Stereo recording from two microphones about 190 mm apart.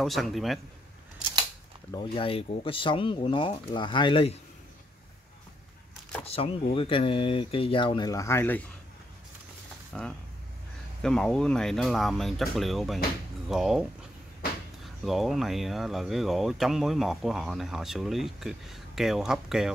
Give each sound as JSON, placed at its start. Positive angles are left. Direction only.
{"t": 0.0, "sound": "speech", "side_deg": 0}
{"t": 1.9, "sound": "speech", "side_deg": 25}
{"t": 6.2, "sound": "speech", "side_deg": 30}
{"t": 9.9, "sound": "speech", "side_deg": 0}
{"t": 15.0, "sound": "speech", "side_deg": 0}